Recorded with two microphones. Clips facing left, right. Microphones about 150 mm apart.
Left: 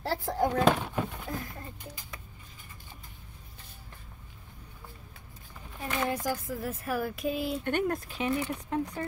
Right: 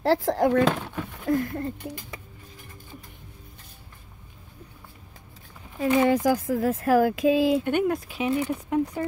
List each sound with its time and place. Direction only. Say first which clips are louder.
0.0 s speech: right 8 dB; 90° right
1.3 s speech: right 13 dB; 65° right (ahead or behind)
5.8 s speech: right 11 dB; 90° right
7.6 s speech: right 5 dB; 10° right (ahead or behind)